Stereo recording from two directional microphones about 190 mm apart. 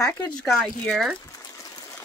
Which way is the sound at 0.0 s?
10° left (ahead or behind).